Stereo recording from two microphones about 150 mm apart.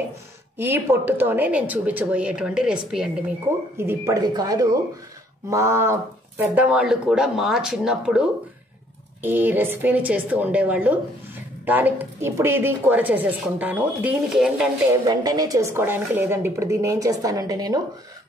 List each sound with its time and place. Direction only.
0.6 s speech: 15° right (ahead or behind)
3.7 s a woman's voice: 15° right (ahead or behind)
9.2 s speech: 15° right (ahead or behind)
14.9 s a woman's voice: 25° right (ahead or behind)